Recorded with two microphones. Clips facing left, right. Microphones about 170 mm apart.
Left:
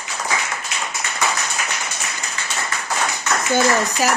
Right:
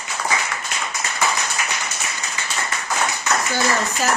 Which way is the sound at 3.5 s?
10° left (ahead or behind).